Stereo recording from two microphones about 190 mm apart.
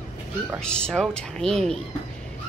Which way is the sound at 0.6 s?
5° left (ahead or behind).